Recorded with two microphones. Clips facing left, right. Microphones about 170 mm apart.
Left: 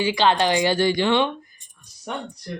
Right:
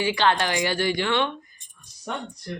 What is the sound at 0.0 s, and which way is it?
Speech, 15° left (ahead or behind).